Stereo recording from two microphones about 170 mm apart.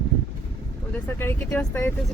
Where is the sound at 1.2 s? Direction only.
15° left (ahead or behind).